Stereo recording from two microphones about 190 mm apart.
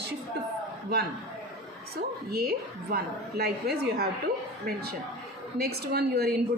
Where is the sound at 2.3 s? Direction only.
55° right (ahead or behind).